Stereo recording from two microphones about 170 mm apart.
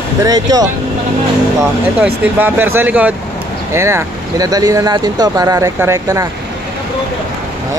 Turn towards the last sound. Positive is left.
turn(degrees=-20)  # may be behind; listen again after turning